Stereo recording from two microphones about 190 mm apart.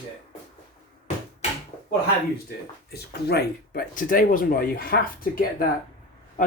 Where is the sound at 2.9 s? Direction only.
55° left (ahead or behind).